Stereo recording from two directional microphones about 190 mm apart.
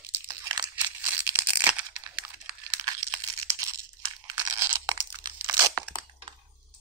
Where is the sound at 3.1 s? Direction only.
15° right (ahead or behind).